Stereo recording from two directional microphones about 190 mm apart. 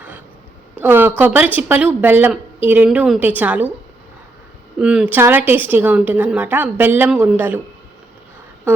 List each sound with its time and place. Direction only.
0.8 s speech: 10° right (ahead or behind)
4.8 s speech: 5° right (ahead or behind)